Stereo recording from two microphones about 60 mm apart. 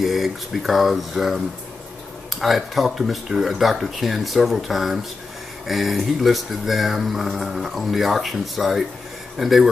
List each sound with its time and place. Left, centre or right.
0.0 s speech: centre
2.4 s speech: centre